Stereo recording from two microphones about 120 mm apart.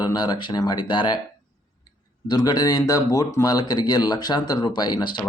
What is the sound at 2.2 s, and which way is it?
Speech, 35° left (ahead or behind).